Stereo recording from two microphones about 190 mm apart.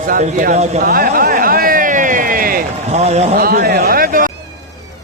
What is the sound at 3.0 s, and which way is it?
Speech, 35° right (ahead or behind).